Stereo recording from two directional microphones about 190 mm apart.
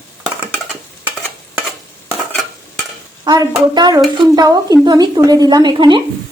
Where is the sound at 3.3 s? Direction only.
20° right (ahead or behind).